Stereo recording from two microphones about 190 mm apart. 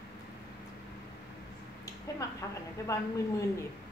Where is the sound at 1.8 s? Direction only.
15° left (ahead or behind).